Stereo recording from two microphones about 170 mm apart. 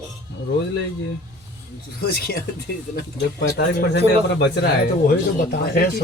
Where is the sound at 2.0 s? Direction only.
65° left (ahead or behind).